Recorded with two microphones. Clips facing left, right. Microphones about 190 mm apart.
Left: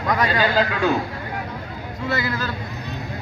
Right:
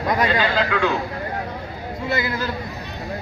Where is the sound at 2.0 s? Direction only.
10° right (ahead or behind).